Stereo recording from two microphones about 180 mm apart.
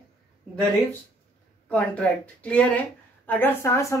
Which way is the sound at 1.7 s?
5° left (ahead or behind).